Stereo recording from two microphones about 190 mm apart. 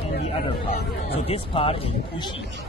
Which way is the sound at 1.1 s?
30° left (ahead or behind).